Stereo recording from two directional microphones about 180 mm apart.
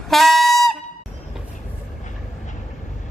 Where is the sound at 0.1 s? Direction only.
Centre (ahead or behind).